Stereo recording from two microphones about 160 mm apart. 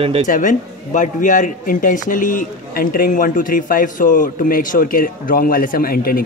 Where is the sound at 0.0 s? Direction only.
35° right (ahead or behind).